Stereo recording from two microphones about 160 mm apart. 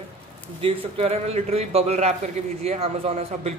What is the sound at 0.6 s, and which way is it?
A man's voice, 40° right (ahead or behind).